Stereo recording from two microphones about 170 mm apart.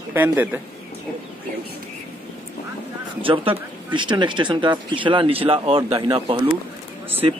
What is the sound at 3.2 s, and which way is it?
A man's voice, 30° right (ahead or behind).